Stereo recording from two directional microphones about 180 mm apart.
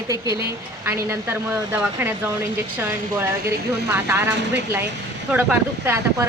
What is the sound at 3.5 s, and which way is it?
Speech, 15° right (ahead or behind).